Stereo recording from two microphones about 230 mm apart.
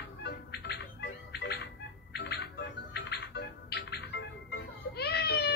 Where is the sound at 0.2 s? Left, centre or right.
Left.